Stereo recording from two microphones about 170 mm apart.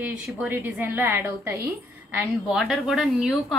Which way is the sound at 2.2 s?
Centre (ahead or behind).